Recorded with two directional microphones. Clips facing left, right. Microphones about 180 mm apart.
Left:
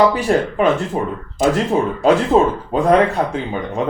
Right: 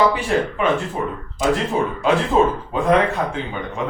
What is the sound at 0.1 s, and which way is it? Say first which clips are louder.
Speech: left 3 dB; 40° left (ahead or behind).